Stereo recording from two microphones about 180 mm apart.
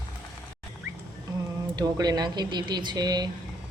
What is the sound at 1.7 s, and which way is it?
Speech, 20° right (ahead or behind).